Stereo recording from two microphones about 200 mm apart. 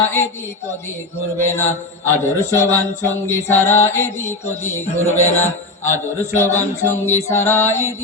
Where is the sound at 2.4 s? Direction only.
15° left (ahead or behind).